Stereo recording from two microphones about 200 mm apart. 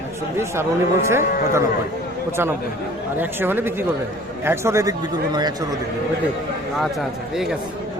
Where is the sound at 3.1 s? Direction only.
10° right (ahead or behind).